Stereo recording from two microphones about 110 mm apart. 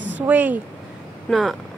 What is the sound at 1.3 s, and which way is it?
Speech, centre (ahead or behind).